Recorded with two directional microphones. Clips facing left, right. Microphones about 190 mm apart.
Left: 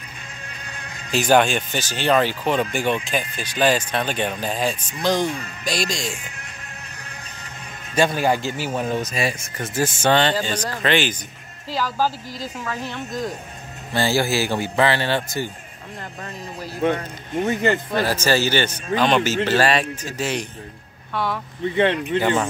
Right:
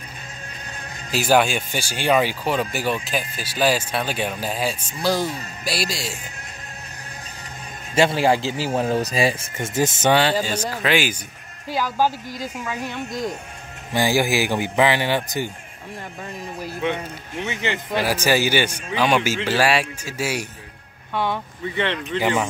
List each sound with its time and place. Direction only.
1.1 s speech: 5° right (ahead or behind)
7.9 s a man's voice: 25° right (ahead or behind)
8.7 s speech: 35° right (ahead or behind)
9.8 s speech: 20° right (ahead or behind)
10.1 s speech: 5° right (ahead or behind)
17.5 s speech: 40° left (ahead or behind)
17.9 s speech: 10° right (ahead or behind)
21.7 s speech: 50° left (ahead or behind)
22.2 s speech: 10° right (ahead or behind)